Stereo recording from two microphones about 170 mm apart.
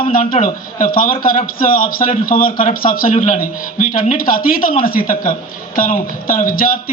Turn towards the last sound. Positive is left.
turn(degrees=55)  # may be behind; listen again after turning